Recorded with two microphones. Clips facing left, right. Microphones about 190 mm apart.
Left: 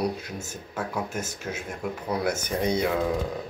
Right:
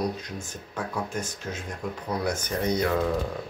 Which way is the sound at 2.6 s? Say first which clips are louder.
Even; 10° left (ahead or behind).